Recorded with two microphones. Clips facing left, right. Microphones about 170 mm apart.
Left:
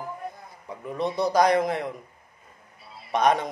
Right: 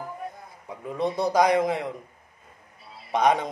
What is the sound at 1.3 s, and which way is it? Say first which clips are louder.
Speech: even; 15° right (ahead or behind).